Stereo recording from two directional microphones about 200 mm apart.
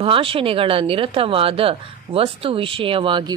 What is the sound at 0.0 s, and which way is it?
Speech, 25° right (ahead or behind).